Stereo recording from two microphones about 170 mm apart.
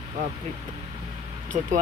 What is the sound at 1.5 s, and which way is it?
Speech, 45° right (ahead or behind).